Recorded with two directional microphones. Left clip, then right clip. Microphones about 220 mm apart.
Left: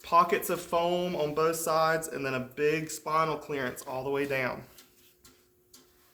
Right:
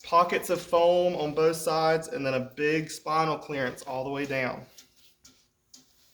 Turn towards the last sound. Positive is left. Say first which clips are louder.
# even
turn(degrees=30)  # may be behind; listen again after turning